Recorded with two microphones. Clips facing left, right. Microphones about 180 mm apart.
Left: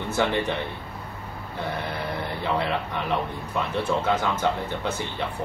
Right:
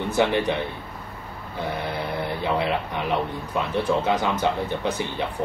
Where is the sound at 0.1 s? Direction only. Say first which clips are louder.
Right 2 dB; 15° right (ahead or behind).